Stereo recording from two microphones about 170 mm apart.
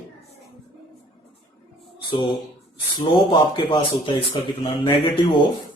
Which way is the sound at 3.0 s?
30° left (ahead or behind).